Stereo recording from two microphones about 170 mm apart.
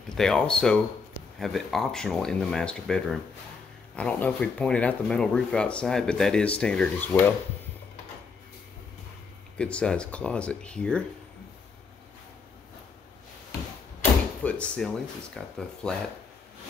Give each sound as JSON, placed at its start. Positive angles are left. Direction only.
{"t": 0.1, "sound": "speech", "side_deg": 5}
{"t": 9.6, "sound": "speech", "side_deg": 5}
{"t": 14.4, "sound": "speech", "side_deg": 5}